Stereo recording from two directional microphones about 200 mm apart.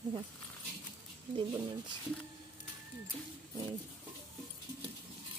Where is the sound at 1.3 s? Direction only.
20° right (ahead or behind).